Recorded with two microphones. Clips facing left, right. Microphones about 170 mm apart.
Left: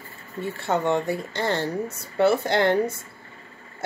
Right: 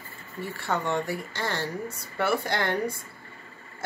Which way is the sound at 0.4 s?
20° left (ahead or behind).